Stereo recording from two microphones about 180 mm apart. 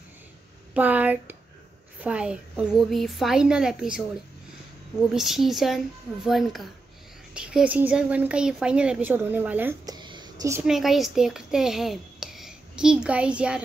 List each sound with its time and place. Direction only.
0.7 s a woman's voice: 10° right (ahead or behind)
5.1 s a woman's voice: centre (ahead or behind)
9.8 s a sound: 25° right (ahead or behind)
10.6 s a child's voice: centre (ahead or behind)